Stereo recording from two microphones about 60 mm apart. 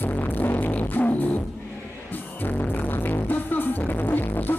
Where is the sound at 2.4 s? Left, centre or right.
Left.